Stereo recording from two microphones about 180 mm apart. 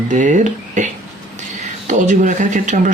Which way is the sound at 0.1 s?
45° right (ahead or behind).